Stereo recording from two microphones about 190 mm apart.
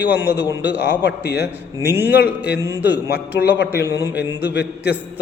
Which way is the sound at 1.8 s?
10° right (ahead or behind).